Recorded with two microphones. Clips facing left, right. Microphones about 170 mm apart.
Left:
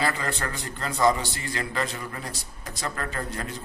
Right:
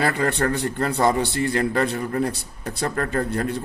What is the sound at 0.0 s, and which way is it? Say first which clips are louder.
A man's voice: right 7 dB; 60° right (ahead or behind).